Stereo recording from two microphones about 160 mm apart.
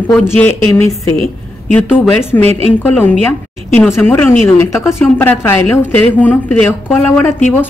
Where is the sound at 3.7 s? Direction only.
10° left (ahead or behind).